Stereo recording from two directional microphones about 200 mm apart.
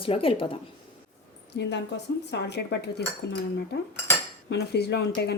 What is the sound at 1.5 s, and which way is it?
A woman's voice, 65° left (ahead or behind).